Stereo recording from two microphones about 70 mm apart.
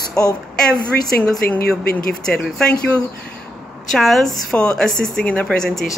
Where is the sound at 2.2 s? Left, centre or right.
Centre.